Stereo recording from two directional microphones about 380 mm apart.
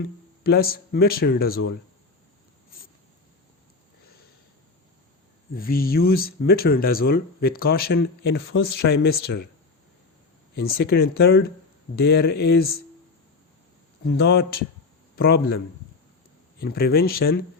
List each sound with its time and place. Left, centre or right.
0.4 s speech: left
5.5 s speech: left
10.6 s speech: left
14.0 s a man's voice: left